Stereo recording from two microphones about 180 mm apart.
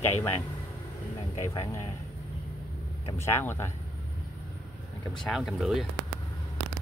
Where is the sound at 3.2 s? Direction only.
15° left (ahead or behind).